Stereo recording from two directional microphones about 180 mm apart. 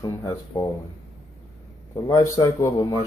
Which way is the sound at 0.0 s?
20° left (ahead or behind).